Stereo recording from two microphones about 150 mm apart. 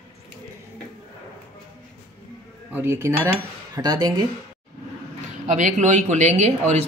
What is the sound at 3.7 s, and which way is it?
Speech, 25° right (ahead or behind).